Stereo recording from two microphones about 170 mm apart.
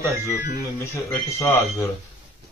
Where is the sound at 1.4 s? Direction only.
15° left (ahead or behind).